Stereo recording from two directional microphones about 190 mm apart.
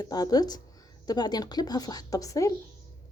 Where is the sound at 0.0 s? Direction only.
20° left (ahead or behind).